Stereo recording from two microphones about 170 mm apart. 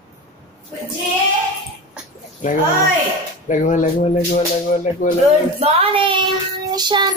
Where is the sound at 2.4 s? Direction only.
50° left (ahead or behind).